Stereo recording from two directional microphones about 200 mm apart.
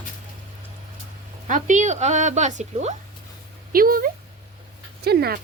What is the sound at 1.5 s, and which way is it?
A woman's voice, 40° right (ahead or behind).